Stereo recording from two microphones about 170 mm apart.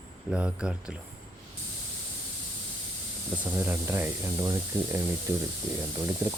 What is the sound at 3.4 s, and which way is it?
Speech, 15° right (ahead or behind).